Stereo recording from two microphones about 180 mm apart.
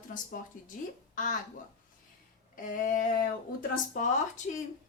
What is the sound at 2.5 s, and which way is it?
Speech, 50° left (ahead or behind).